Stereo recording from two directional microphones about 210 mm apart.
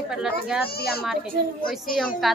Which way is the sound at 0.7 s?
45° left (ahead or behind).